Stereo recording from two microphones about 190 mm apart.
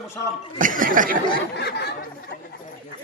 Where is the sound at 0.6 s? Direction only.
45° right (ahead or behind).